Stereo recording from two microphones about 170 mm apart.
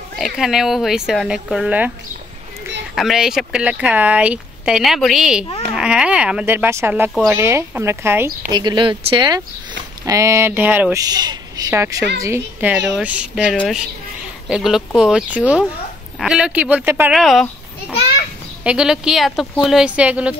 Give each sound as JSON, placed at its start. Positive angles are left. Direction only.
{"t": 0.2, "sound": "speech", "side_deg": 0}
{"t": 3.0, "sound": "a woman's voice", "side_deg": 0}
{"t": 8.5, "sound": "a woman's voice", "side_deg": -25}
{"t": 11.0, "sound": "a woman's voice", "side_deg": -25}
{"t": 17.1, "sound": "speech", "side_deg": 0}
{"t": 18.6, "sound": "speech", "side_deg": -5}